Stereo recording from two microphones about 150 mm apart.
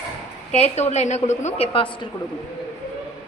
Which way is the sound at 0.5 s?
45° left (ahead or behind).